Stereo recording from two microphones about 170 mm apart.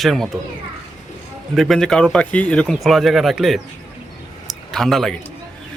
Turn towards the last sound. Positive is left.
turn(degrees=0)  # may be behind; listen again after turning